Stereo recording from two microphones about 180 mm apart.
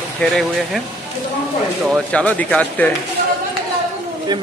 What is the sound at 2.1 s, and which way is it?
Speech, 5° left (ahead or behind).